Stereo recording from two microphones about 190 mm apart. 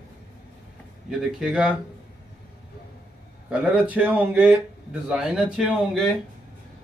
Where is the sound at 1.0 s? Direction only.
Centre (ahead or behind).